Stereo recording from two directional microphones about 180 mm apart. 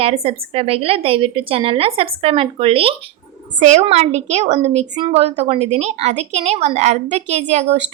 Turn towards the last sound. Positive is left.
turn(degrees=-40)  # may be behind; listen again after turning